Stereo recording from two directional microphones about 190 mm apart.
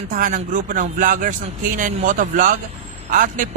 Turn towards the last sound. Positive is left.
turn(degrees=-45)  # may be behind; listen again after turning